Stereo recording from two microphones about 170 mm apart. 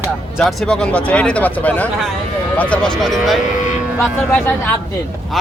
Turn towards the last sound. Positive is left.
turn(degrees=10)  # may be behind; listen again after turning